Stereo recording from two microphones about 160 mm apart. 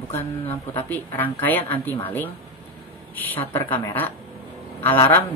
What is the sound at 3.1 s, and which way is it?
Speech, 10° left (ahead or behind).